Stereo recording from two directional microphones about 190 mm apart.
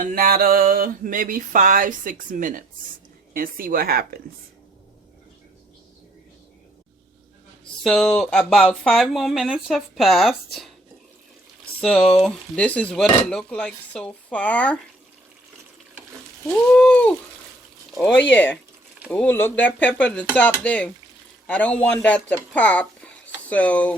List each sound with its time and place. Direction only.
0.0 s a sound: 50° right (ahead or behind)
7.9 s speech: 5° left (ahead or behind)
11.8 s speech: 5° left (ahead or behind)
16.5 s speech: 5° left (ahead or behind)
18.2 s speech: 5° left (ahead or behind)